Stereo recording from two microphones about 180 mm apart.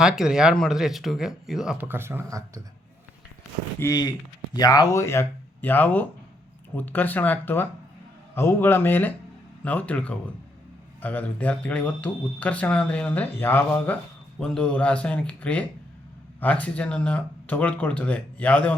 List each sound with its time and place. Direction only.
0.0 s speech: 5° right (ahead or behind)
3.8 s speech: 20° left (ahead or behind)